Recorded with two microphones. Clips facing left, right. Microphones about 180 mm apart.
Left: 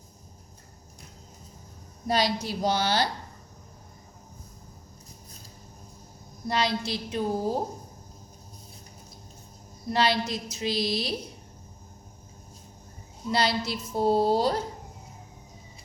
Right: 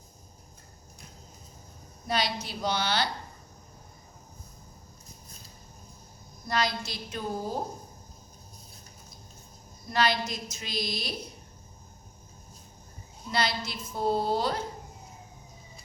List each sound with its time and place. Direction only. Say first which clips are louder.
2.0 s speech: left 5 dB; 40° left (ahead or behind)
6.5 s a woman's voice: left 3 dB; 30° left (ahead or behind)
9.9 s speech: left 2 dB; 30° left (ahead or behind)
13.3 s speech: left 4 dB; 35° left (ahead or behind)